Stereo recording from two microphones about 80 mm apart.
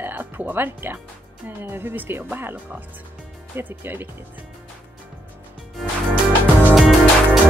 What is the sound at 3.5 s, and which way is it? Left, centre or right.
Speech, right.